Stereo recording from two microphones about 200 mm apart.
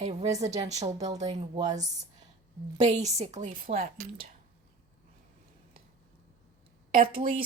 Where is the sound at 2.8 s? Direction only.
35° right (ahead or behind).